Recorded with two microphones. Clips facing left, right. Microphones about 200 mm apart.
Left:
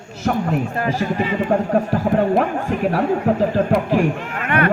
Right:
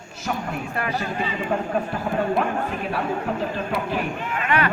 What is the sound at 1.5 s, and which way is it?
Speech, 45° left (ahead or behind).